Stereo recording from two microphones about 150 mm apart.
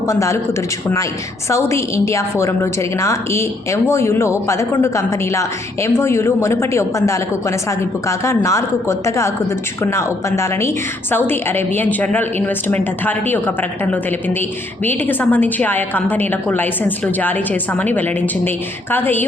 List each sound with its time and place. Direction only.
0.1 s a woman's voice: 20° left (ahead or behind)
1.5 s a woman's voice: 20° left (ahead or behind)